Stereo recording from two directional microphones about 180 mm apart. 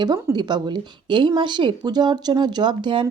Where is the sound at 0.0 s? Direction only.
20° right (ahead or behind).